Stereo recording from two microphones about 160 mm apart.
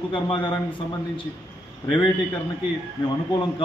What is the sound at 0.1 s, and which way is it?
Speech, 30° left (ahead or behind).